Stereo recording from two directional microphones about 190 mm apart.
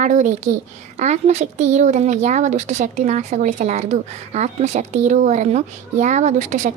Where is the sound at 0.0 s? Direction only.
40° right (ahead or behind).